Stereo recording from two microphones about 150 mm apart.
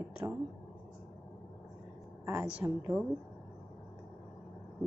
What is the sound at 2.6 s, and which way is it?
Speech, 20° right (ahead or behind).